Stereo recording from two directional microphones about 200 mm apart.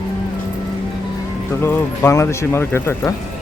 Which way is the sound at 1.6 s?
10° left (ahead or behind).